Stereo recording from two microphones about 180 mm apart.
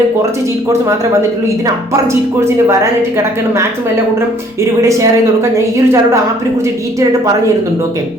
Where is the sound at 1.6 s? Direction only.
15° right (ahead or behind).